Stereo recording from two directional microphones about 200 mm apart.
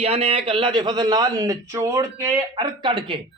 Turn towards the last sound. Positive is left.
turn(degrees=-25)  # may be behind; listen again after turning